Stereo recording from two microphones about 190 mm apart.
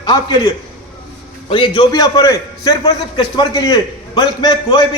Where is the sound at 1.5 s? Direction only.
25° left (ahead or behind).